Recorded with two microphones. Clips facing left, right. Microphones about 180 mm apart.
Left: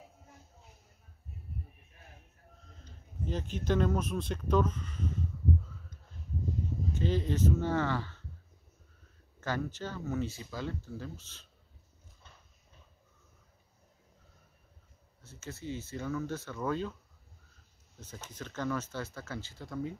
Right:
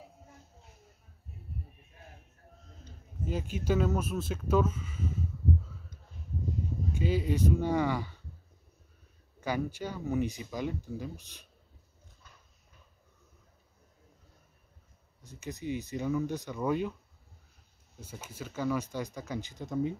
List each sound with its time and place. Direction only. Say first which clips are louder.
3.3 s speech: right 1 dB; 10° right (ahead or behind)
6.9 s speech: right 2 dB; 10° right (ahead or behind)
9.4 s speech: right 2 dB; 10° right (ahead or behind)
15.2 s speech: right 4 dB; 15° right (ahead or behind)
18.0 s speech: right 2 dB; 10° right (ahead or behind)